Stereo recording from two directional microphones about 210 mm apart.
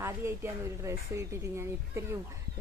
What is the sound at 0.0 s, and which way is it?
Speech, 10° right (ahead or behind).